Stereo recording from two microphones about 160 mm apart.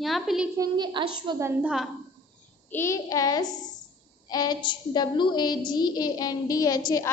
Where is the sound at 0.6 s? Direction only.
30° right (ahead or behind).